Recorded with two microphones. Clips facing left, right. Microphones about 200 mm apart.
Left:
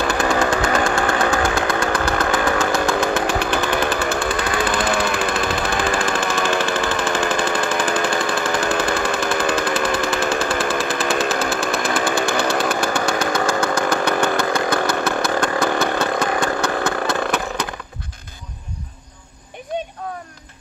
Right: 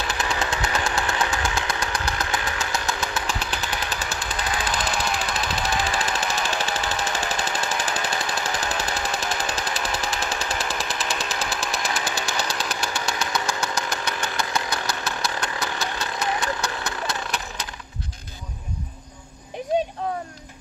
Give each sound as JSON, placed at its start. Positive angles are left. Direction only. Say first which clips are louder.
{"t": 0.0, "sound": "chainsaw", "louder": "left 9 dB", "side_deg": 50}